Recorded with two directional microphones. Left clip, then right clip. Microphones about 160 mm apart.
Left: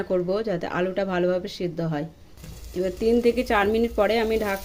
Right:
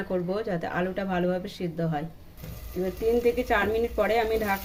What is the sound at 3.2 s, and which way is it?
Speech, 50° left (ahead or behind).